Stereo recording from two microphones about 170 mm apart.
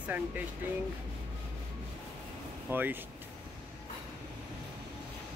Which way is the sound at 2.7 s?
10° right (ahead or behind).